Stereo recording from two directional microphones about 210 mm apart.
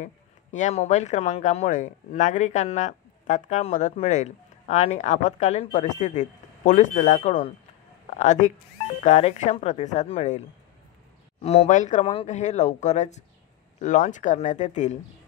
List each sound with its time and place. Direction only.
0.0 s speech: 35° left (ahead or behind)
11.4 s speech: 30° left (ahead or behind)